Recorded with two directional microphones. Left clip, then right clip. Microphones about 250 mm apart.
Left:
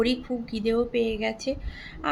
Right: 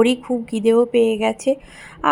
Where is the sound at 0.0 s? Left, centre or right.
Right.